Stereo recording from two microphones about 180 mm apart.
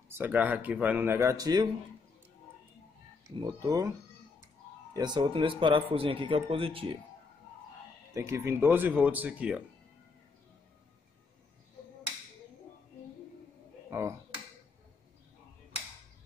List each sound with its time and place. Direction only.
0.1 s speech: 10° right (ahead or behind)
3.3 s a man's voice: 25° right (ahead or behind)
4.9 s a man's voice: 25° right (ahead or behind)
8.1 s speech: 15° right (ahead or behind)
13.8 s speech: 15° right (ahead or behind)